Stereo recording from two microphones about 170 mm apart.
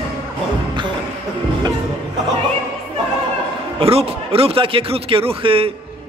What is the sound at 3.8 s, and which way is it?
A man's voice, 35° right (ahead or behind).